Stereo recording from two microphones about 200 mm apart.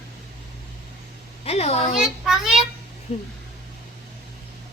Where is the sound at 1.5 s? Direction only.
30° left (ahead or behind).